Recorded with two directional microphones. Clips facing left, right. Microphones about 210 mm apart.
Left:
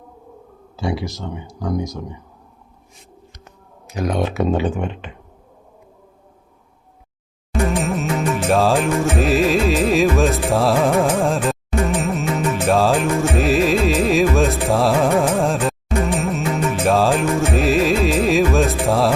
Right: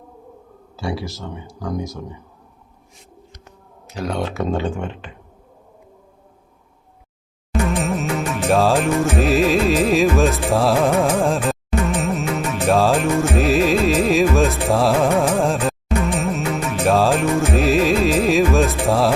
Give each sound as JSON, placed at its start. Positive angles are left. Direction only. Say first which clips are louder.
{"t": 0.8, "sound": "speech", "louder": "left 2 dB", "side_deg": 20}
{"t": 3.8, "sound": "speech", "louder": "left 3 dB", "side_deg": 15}
{"t": 7.6, "sound": "music", "louder": "left 1 dB", "side_deg": 0}